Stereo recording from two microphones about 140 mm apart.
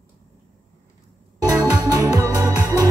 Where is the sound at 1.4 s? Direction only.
25° right (ahead or behind).